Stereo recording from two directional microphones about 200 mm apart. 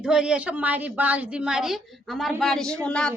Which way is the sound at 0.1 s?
5° right (ahead or behind).